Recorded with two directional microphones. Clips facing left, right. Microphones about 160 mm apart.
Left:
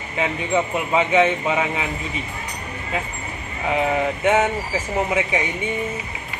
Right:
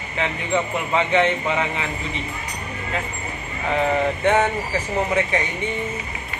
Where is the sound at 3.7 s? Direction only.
10° left (ahead or behind).